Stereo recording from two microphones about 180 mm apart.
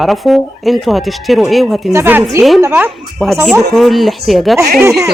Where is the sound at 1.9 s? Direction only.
15° right (ahead or behind).